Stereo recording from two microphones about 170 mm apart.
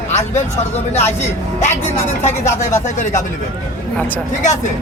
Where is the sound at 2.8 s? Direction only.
45° left (ahead or behind).